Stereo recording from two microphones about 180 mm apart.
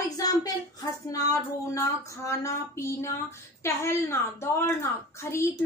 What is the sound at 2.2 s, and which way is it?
A woman's voice, 15° left (ahead or behind).